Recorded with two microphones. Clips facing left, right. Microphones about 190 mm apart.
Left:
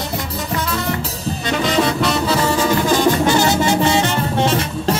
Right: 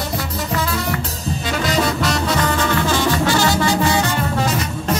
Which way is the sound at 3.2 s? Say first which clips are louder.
Left 2 dB; 20° left (ahead or behind).